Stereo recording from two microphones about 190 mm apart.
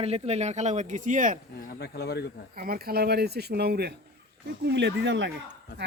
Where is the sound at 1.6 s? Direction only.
60° left (ahead or behind).